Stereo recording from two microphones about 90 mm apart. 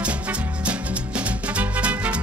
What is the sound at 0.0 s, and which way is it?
Music, 15° right (ahead or behind).